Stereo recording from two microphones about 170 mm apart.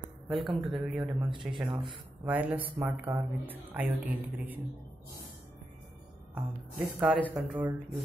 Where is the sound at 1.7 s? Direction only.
30° right (ahead or behind).